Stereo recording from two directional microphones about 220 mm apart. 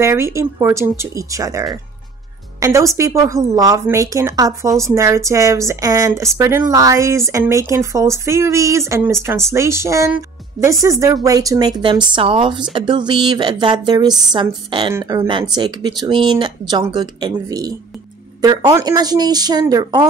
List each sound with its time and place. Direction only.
0.0 s a woman's voice: 10° right (ahead or behind)